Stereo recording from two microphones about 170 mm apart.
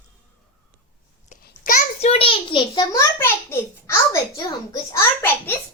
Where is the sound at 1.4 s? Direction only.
55° left (ahead or behind).